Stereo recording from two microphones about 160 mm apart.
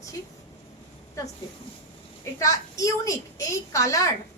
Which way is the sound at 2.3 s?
20° left (ahead or behind).